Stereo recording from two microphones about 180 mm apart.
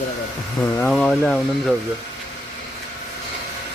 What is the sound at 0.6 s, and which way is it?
Speech, 5° left (ahead or behind).